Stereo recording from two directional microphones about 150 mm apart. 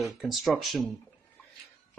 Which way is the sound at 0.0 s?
Centre (ahead or behind).